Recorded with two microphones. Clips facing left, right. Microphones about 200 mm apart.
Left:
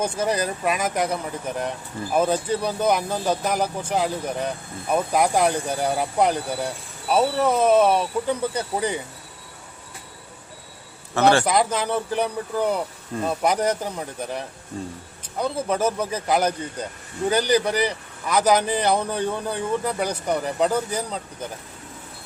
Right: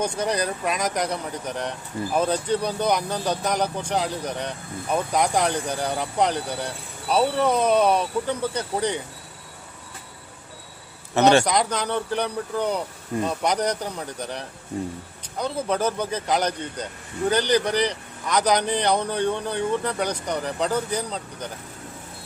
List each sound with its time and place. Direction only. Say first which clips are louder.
0.0 s speech: left 1 dB; 5° left (ahead or behind)
11.1 s a man's voice: right 1 dB; 20° right (ahead or behind)
11.4 s speech: left 2 dB; 5° left (ahead or behind)